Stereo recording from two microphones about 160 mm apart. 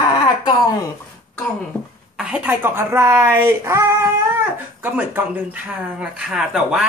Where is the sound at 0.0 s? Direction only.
25° left (ahead or behind).